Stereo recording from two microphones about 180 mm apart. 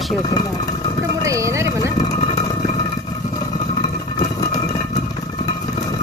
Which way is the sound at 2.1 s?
35° left (ahead or behind).